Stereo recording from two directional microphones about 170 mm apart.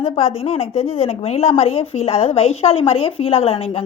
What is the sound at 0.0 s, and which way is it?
A woman's voice, 35° left (ahead or behind).